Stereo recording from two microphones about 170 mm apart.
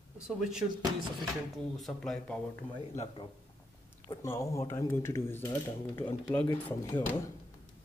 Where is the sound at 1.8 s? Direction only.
Centre (ahead or behind).